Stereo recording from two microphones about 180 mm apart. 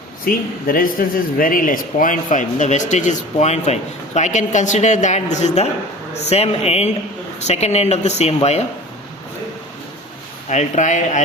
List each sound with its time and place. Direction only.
0.3 s speech: 50° left (ahead or behind); by 8.6 s 35° left (ahead or behind)
10.5 s speech: 40° left (ahead or behind)